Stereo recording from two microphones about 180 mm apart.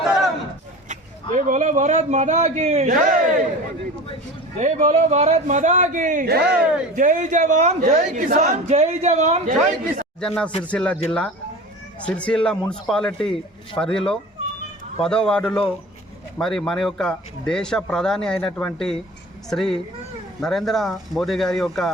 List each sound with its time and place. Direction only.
0.9 s a man's voice: 40° right (ahead or behind)
4.5 s a man's voice: 40° right (ahead or behind)
10.2 s speech: 5° left (ahead or behind)
12.0 s speech: 5° left (ahead or behind)
15.0 s speech: 5° left (ahead or behind)